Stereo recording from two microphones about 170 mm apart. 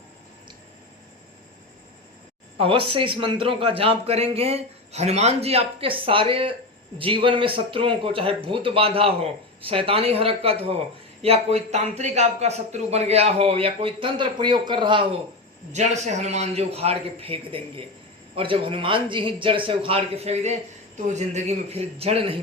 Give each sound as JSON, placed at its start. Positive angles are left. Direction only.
{"t": 2.6, "sound": "a man's voice", "side_deg": -30}
{"t": 15.7, "sound": "a man's voice", "side_deg": -45}